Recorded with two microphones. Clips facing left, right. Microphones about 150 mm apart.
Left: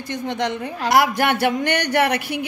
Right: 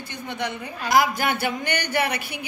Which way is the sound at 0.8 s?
70° left (ahead or behind).